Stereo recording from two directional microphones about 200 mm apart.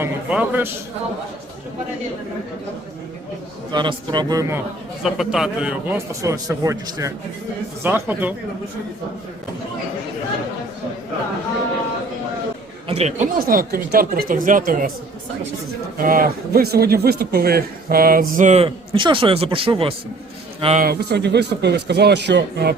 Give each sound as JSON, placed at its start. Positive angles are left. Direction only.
{"t": 0.0, "sound": "a man's voice", "side_deg": -10}
{"t": 3.7, "sound": "a man's voice", "side_deg": -20}
{"t": 5.0, "sound": "a man's voice", "side_deg": 0}
{"t": 12.9, "sound": "a man's voice", "side_deg": -35}
{"t": 16.0, "sound": "a man's voice", "side_deg": -45}
{"t": 20.8, "sound": "a man's voice", "side_deg": -50}